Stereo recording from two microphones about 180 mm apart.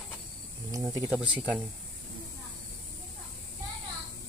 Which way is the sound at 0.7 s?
20° right (ahead or behind).